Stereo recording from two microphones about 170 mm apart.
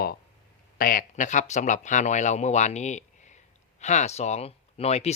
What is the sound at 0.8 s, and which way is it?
Speech, 55° left (ahead or behind).